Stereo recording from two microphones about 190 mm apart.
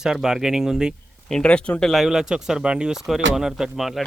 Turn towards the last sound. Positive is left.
turn(degrees=0)  # may be behind; listen again after turning